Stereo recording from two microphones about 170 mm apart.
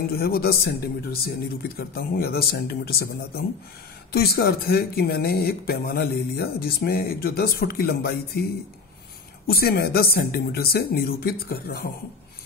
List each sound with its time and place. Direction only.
0.1 s speech: 65° left (ahead or behind)
9.5 s speech: 65° left (ahead or behind)